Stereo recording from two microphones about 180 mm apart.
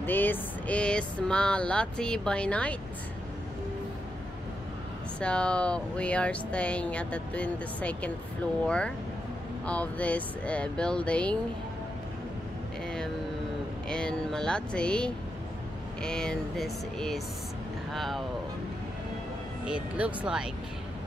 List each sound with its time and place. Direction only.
0.0 s speech: 10° left (ahead or behind)
5.2 s speech: 5° left (ahead or behind)
13.8 s speech: 5° left (ahead or behind)
19.6 s speech: 5° right (ahead or behind)